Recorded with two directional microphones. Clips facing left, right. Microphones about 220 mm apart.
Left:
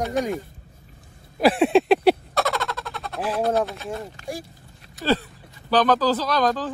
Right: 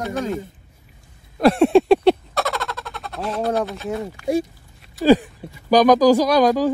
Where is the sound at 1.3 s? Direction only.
5° left (ahead or behind).